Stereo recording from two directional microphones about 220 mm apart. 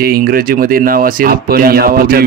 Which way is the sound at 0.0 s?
40° right (ahead or behind).